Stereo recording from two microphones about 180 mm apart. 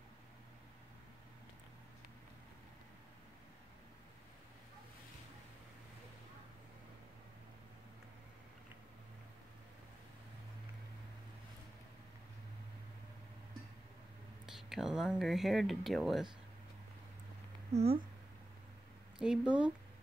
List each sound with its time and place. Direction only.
14.4 s speech: centre (ahead or behind)
17.7 s speech: 35° right (ahead or behind)
19.1 s speech: 5° right (ahead or behind)